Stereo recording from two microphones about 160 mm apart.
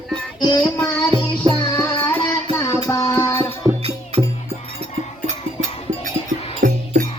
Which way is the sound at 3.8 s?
40° right (ahead or behind).